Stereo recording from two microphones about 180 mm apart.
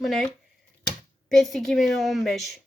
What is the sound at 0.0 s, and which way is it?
Speech, 5° left (ahead or behind).